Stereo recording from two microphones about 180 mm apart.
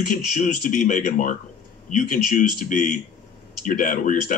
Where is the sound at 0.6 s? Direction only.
45° left (ahead or behind).